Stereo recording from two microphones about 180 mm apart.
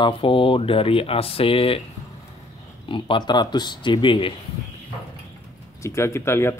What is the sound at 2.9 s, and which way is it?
Speech, 25° left (ahead or behind).